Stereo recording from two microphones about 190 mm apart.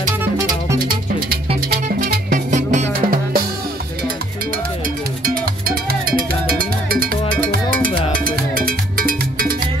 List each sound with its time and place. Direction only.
1.7 s music: 55° right (ahead or behind)
5.2 s music: 50° right (ahead or behind)